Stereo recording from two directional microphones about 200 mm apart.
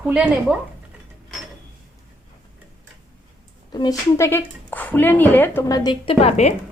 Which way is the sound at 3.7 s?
20° left (ahead or behind).